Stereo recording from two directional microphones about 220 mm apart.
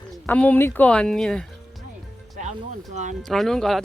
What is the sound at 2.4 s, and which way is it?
Speech, 35° right (ahead or behind).